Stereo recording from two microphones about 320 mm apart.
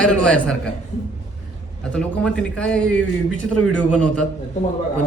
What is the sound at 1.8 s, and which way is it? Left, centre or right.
Speech, centre.